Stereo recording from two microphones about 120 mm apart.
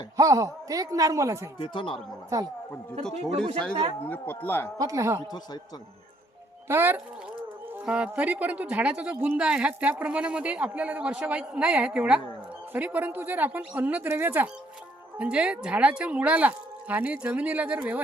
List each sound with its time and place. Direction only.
0.2 s speech: 30° right (ahead or behind)
1.5 s speech: 45° left (ahead or behind)
2.3 s speech: 25° right (ahead or behind)
3.2 s speech: 5° left (ahead or behind)
4.0 s speech: 15° left (ahead or behind)
4.8 s speech: 25° right (ahead or behind)
6.7 s speech: 20° right (ahead or behind)